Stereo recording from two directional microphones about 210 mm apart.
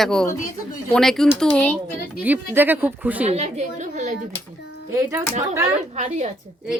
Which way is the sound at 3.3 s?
35° right (ahead or behind).